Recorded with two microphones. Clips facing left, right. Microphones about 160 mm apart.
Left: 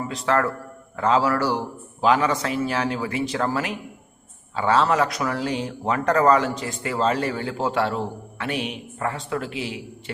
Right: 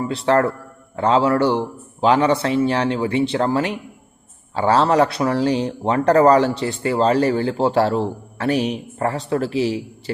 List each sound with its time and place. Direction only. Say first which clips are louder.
0.1 s a man's voice: right 5 dB; 30° right (ahead or behind)